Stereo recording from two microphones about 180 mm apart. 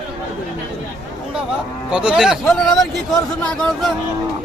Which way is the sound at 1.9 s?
5° right (ahead or behind).